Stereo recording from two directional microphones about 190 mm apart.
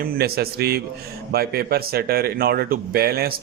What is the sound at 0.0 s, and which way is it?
A man's voice, 50° right (ahead or behind).